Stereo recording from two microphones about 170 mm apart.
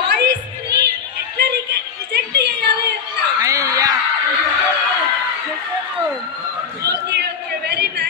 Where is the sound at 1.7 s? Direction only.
70° right (ahead or behind).